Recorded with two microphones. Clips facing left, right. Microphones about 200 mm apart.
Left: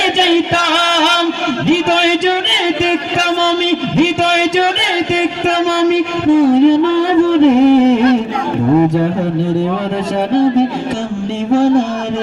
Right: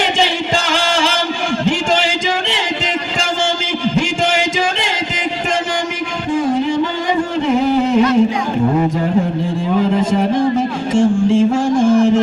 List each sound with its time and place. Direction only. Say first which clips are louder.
0.2 s music: left 6 dB; 70° left (ahead or behind)
6.2 s music: left 8 dB; 70° left (ahead or behind)
10.9 s music: right 7 dB; 65° left (ahead or behind)